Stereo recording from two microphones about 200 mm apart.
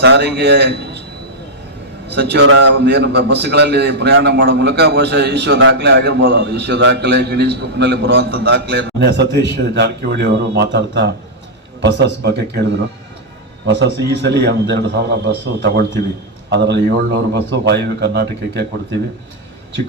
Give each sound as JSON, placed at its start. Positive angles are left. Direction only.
{"t": 0.0, "sound": "a man's voice", "side_deg": -60}
{"t": 2.1, "sound": "a man's voice", "side_deg": -55}
{"t": 13.7, "sound": "a man's voice", "side_deg": -60}